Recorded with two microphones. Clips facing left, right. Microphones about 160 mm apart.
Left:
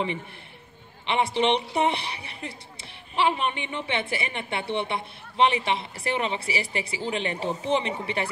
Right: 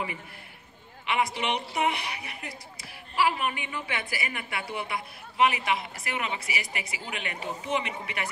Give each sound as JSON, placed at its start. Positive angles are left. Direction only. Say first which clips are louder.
{"t": 1.0, "sound": "a woman's voice", "louder": "left 5 dB", "side_deg": 30}